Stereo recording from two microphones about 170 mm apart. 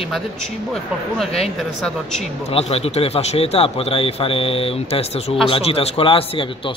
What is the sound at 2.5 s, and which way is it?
Speech, 35° left (ahead or behind).